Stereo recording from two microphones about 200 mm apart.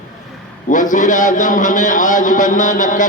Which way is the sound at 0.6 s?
40° left (ahead or behind).